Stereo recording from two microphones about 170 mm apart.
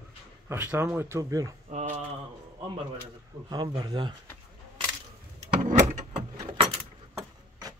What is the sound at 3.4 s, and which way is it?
Speech, 25° right (ahead or behind).